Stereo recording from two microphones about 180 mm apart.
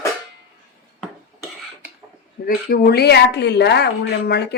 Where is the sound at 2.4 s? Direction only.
55° left (ahead or behind).